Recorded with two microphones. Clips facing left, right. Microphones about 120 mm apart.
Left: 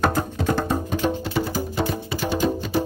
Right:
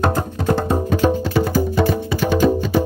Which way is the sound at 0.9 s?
85° right.